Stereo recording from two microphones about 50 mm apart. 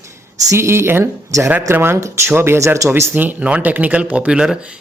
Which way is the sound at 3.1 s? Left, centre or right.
Right.